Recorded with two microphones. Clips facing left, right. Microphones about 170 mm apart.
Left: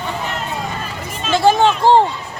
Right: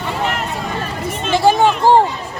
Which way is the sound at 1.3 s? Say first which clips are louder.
Even; 10° right (ahead or behind).